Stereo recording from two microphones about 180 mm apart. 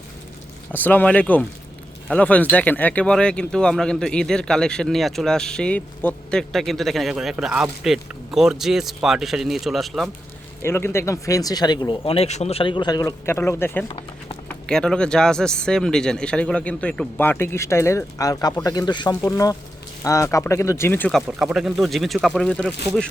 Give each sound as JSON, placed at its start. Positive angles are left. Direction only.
{"t": 0.7, "sound": "a man's voice", "side_deg": 10}
{"t": 10.6, "sound": "speech", "side_deg": 15}
{"t": 13.8, "sound": "run", "side_deg": 30}
{"t": 14.4, "sound": "a man's voice", "side_deg": 5}
{"t": 21.2, "sound": "speech", "side_deg": -5}